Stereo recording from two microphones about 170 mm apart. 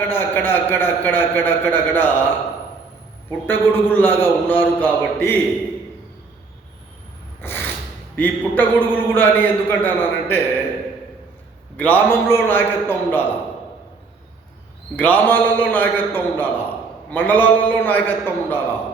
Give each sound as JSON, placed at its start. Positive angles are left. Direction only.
{"t": 0.1, "sound": "a man's voice", "side_deg": 10}
{"t": 3.4, "sound": "a man's voice", "side_deg": 10}
{"t": 7.4, "sound": "a sound", "side_deg": 10}
{"t": 8.1, "sound": "a man's voice", "side_deg": 10}
{"t": 11.8, "sound": "a man's voice", "side_deg": 10}
{"t": 14.9, "sound": "a man's voice", "side_deg": 10}